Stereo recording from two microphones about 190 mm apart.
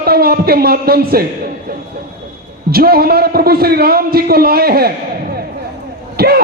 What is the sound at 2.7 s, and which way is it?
A man's voice, 55° right (ahead or behind).